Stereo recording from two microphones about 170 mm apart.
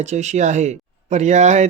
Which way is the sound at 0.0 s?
45° right (ahead or behind).